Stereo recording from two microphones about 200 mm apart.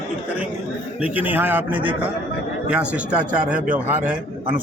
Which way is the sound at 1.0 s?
10° right (ahead or behind).